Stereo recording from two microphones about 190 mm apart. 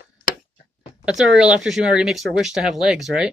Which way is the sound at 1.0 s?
5° right (ahead or behind).